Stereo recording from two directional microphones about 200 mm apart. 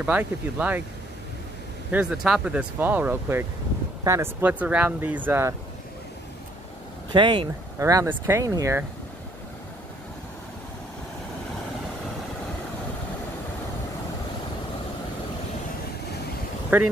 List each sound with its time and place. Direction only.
0.0 s speech: 10° right (ahead or behind)
1.9 s speech: 5° right (ahead or behind)
7.1 s speech: 25° right (ahead or behind)
16.7 s speech: 10° right (ahead or behind)